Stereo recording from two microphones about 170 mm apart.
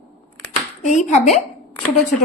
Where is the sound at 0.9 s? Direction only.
45° left (ahead or behind).